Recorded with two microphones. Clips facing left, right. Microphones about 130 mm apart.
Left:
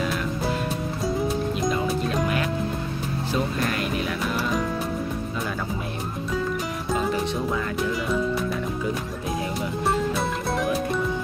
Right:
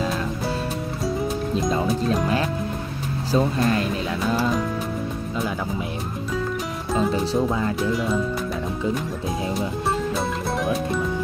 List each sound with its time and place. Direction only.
3.3 s speech: 30° right (ahead or behind)
4.4 s music: centre (ahead or behind)
10.6 s music: centre (ahead or behind)